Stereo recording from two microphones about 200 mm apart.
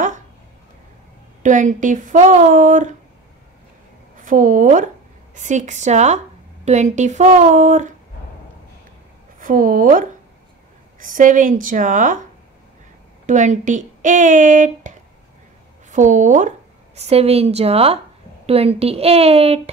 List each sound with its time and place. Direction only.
1.4 s a woman's voice: 40° right (ahead or behind)
4.2 s a woman's voice: 40° right (ahead or behind)
9.4 s a woman's voice: 40° right (ahead or behind)
13.3 s a woman's voice: 40° right (ahead or behind)